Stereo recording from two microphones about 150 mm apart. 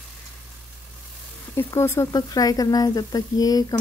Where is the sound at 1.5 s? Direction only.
15° left (ahead or behind).